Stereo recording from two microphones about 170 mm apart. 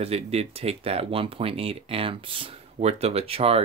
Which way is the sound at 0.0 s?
35° right (ahead or behind).